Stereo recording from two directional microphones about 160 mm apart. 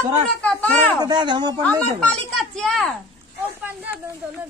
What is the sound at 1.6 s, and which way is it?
A man's voice, 10° left (ahead or behind).